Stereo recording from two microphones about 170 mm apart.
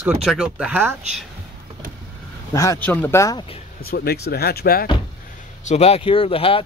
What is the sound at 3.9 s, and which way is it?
Speech, 65° left (ahead or behind).